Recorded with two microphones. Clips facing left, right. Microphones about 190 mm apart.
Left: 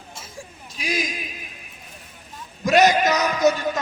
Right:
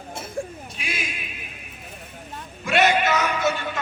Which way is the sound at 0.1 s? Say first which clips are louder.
Right 10 dB; 60° right (ahead or behind).